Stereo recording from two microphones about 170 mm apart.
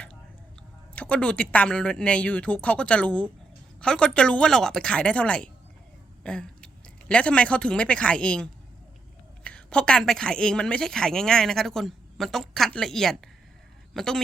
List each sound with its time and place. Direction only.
0.9 s a woman's voice: 10° left (ahead or behind)